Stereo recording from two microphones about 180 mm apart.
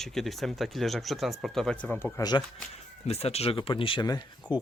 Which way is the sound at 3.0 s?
35° left (ahead or behind).